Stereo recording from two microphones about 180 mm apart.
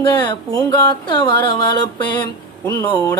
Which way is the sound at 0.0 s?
20° left (ahead or behind).